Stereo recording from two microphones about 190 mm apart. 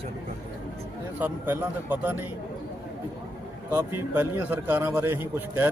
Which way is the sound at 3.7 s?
10° right (ahead or behind).